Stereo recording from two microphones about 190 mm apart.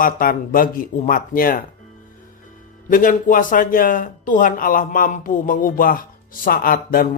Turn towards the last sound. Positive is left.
turn(degrees=50)  # may be behind; listen again after turning